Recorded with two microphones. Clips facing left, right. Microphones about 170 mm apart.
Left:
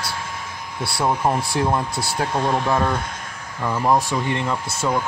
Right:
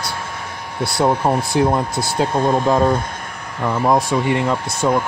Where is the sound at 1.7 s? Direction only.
20° right (ahead or behind).